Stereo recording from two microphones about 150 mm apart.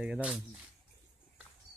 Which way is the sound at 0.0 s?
5° right (ahead or behind).